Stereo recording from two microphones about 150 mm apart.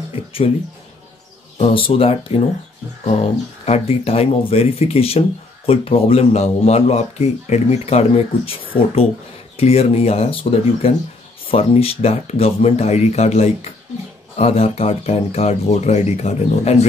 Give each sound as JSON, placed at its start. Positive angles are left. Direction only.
{"t": 0.1, "sound": "speech", "side_deg": 40}
{"t": 1.6, "sound": "speech", "side_deg": 40}
{"t": 9.6, "sound": "speech", "side_deg": 45}